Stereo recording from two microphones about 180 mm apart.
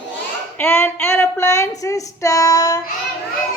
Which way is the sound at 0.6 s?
15° left (ahead or behind).